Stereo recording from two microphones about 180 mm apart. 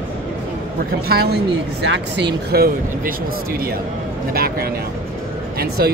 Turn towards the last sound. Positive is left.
turn(degrees=-60)  # may be behind; listen again after turning